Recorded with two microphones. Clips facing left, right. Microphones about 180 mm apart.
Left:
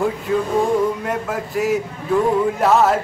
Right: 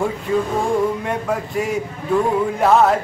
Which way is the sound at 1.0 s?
Centre (ahead or behind).